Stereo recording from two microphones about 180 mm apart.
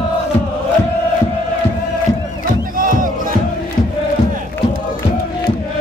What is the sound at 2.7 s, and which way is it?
Battle cry, 50° right (ahead or behind).